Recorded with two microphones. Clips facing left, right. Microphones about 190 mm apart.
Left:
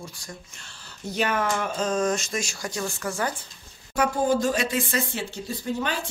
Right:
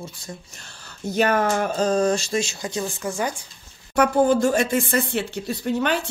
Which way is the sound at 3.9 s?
65° right (ahead or behind).